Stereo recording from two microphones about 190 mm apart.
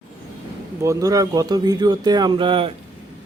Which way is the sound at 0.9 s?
15° right (ahead or behind).